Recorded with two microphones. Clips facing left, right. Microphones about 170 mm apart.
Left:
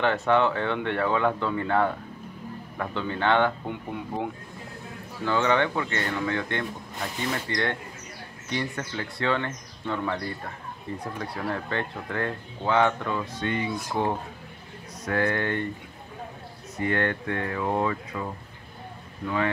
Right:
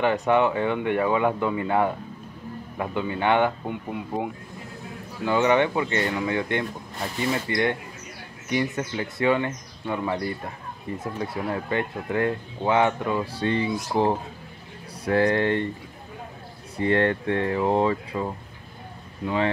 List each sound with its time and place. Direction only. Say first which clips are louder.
0.0 s speech: right 2 dB; 15° right (ahead or behind)
5.2 s speech: right 3 dB; 15° right (ahead or behind)
13.2 s speech: right 4 dB; 30° right (ahead or behind)
16.7 s speech: right 5 dB; 30° right (ahead or behind)